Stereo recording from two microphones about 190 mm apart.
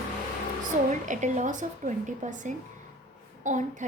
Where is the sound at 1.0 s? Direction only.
40° right (ahead or behind).